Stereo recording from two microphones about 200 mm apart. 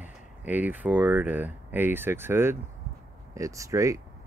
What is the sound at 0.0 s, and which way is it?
Speech, 10° right (ahead or behind).